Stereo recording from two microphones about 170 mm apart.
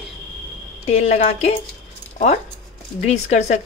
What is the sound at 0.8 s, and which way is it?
Speech, 40° left (ahead or behind).